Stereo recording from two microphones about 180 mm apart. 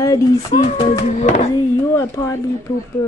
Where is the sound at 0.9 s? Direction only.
40° left (ahead or behind).